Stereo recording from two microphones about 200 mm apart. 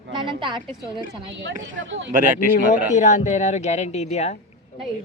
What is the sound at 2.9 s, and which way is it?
Speech, 35° left (ahead or behind).